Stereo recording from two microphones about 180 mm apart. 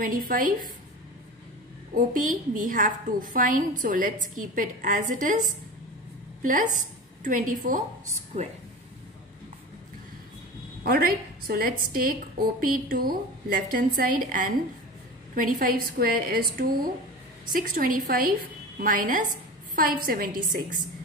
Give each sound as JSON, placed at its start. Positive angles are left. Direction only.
{"t": 0.3, "sound": "a woman's voice", "side_deg": -50}
{"t": 2.0, "sound": "a woman's voice", "side_deg": -45}
{"t": 10.8, "sound": "a woman's voice", "side_deg": -55}